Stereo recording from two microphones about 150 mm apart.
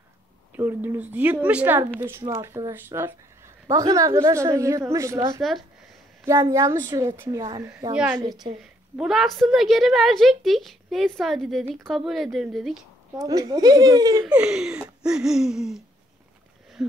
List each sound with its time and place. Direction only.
0.6 s a woman's voice: 15° right (ahead or behind)
5.4 s a woman's voice: centre (ahead or behind)
6.5 s a woman's voice: 20° right (ahead or behind)
7.9 s a woman's voice: 10° right (ahead or behind)
13.2 s a woman's voice: 25° right (ahead or behind)
14.2 s a woman's voice: 5° right (ahead or behind)